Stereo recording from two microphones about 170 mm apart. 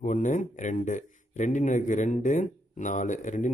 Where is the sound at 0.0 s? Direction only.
50° left (ahead or behind).